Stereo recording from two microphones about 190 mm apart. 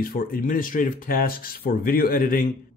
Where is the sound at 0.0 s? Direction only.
50° left (ahead or behind).